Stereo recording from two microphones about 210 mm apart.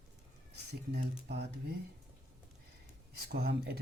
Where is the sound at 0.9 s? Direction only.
55° right (ahead or behind).